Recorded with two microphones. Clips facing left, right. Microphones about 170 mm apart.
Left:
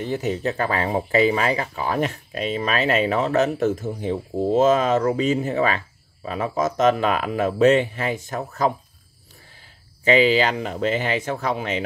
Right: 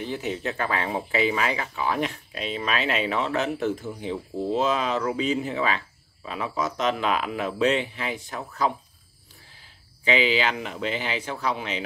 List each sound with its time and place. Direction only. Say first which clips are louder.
0.0 s speech: left 5 dB; 45° left (ahead or behind)
10.0 s speech: left 6 dB; 40° left (ahead or behind)